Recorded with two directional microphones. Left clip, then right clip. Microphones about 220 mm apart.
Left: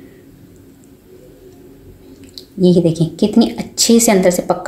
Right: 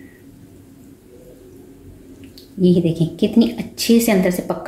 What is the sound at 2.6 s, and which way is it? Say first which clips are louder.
A woman's voice: left 4 dB; 20° left (ahead or behind).